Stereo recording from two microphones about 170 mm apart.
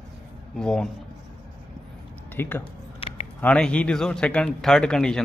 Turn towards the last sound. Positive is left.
turn(degrees=5)  # may be behind; listen again after turning